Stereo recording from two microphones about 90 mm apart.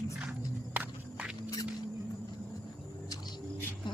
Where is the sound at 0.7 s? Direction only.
15° right (ahead or behind).